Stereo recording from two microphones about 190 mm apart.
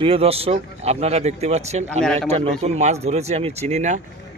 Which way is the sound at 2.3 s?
30° right (ahead or behind).